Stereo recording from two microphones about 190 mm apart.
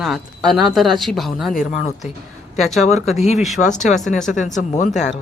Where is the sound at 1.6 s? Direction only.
40° left (ahead or behind).